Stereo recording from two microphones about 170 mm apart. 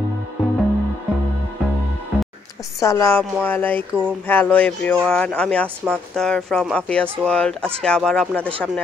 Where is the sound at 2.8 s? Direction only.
15° left (ahead or behind).